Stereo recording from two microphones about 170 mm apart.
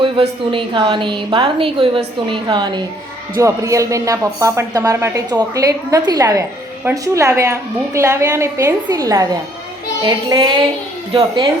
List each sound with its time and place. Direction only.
0.0 s a woman's voice: 30° right (ahead or behind)